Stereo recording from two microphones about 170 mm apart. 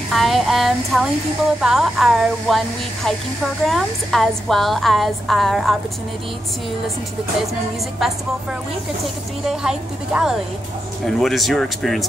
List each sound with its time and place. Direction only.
0.1 s a woman's voice: centre (ahead or behind)
9.0 s a woman's voice: 5° right (ahead or behind)